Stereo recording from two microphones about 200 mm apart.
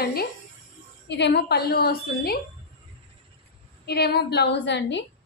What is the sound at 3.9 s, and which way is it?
A woman's voice, 55° left (ahead or behind).